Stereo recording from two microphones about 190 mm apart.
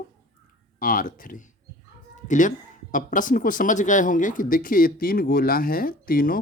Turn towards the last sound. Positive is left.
turn(degrees=50)  # may be behind; listen again after turning